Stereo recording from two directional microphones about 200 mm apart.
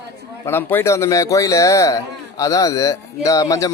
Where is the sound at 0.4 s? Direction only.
10° left (ahead or behind).